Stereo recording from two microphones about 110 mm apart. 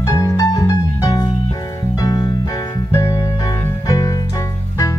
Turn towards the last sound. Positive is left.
turn(degrees=30)  # may be behind; listen again after turning